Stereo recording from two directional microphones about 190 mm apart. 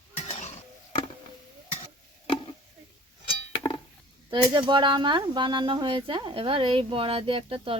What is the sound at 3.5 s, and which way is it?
Chink, 25° left (ahead or behind).